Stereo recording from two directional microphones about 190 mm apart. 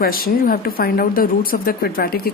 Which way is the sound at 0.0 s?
50° left (ahead or behind).